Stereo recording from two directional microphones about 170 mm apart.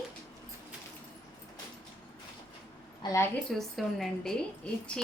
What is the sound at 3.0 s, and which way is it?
Speech, 20° left (ahead or behind).